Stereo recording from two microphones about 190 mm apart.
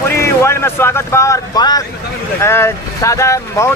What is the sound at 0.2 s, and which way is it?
Speech, 15° left (ahead or behind).